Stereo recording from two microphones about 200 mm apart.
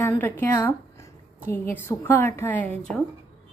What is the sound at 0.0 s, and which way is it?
A woman's voice, 10° left (ahead or behind).